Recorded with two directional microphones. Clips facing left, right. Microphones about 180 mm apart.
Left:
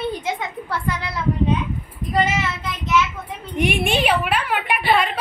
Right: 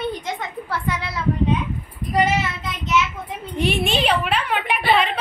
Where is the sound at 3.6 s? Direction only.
15° left (ahead or behind).